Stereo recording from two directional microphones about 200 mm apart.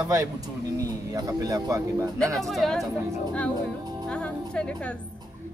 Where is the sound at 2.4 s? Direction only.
Centre (ahead or behind).